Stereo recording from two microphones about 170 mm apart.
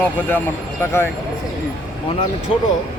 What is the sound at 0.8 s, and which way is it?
Speech, 15° left (ahead or behind).